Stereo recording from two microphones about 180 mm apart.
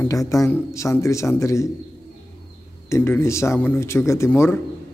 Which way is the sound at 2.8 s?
15° left (ahead or behind).